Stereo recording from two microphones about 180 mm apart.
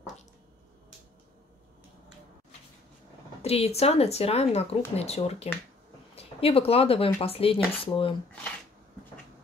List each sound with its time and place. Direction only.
3.4 s speech: 35° left (ahead or behind)